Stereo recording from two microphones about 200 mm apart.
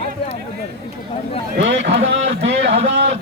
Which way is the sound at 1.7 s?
65° right (ahead or behind).